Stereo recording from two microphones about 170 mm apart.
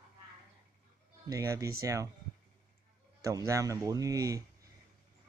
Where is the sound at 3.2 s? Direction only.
20° right (ahead or behind).